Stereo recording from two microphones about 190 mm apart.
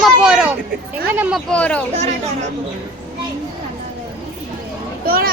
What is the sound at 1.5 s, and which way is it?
Speech, 5° left (ahead or behind).